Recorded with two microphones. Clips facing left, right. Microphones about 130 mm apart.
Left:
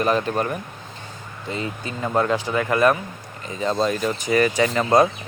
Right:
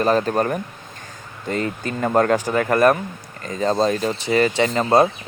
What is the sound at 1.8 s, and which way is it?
Speech, 50° right (ahead or behind).